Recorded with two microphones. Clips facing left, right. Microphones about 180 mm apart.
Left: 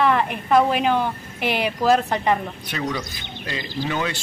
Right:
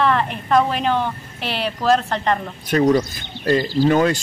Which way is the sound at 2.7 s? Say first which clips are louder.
Right 12 dB; 45° right (ahead or behind).